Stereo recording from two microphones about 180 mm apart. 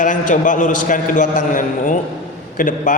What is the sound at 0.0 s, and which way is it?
A man's voice, 45° left (ahead or behind).